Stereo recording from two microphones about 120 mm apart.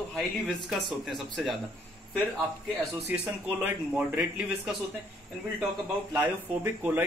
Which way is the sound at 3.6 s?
10° right (ahead or behind).